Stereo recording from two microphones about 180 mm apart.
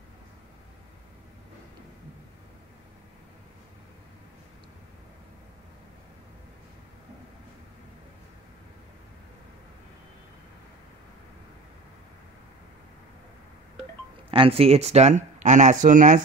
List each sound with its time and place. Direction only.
14.3 s speech: 30° right (ahead or behind); by 16.2 s 45° right (ahead or behind)